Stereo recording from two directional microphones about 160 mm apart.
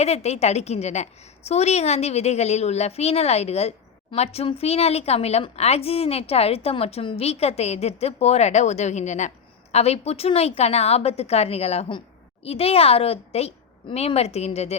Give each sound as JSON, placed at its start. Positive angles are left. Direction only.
{"t": 0.0, "sound": "a woman's voice", "side_deg": 40}